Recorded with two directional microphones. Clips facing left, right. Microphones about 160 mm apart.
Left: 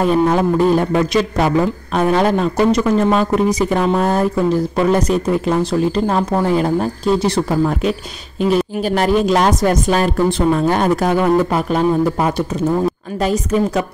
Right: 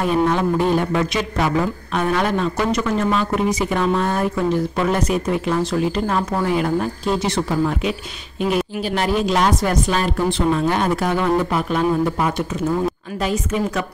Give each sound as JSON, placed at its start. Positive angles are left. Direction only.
{"t": 0.3, "sound": "speech", "side_deg": 35}